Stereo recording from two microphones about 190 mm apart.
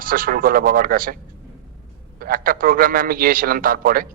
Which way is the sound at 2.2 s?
50° right (ahead or behind).